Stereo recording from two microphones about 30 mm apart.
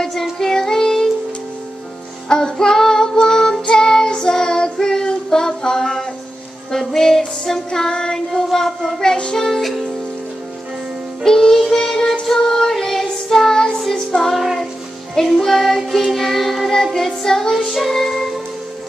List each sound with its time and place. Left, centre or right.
0.1 s music: centre
2.2 s child singing: left
6.7 s music: centre
9.1 s music: left
9.6 s music: centre
11.2 s child singing: centre
12.4 s music: centre
12.6 s child singing: centre
13.9 s music: centre
14.3 s music: centre
15.2 s child singing: centre
16.7 s music: centre